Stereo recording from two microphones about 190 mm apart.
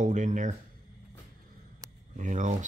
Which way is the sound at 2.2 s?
40° right (ahead or behind).